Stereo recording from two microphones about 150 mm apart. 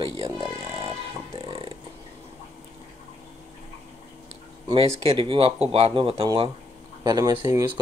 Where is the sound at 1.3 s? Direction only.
40° right (ahead or behind).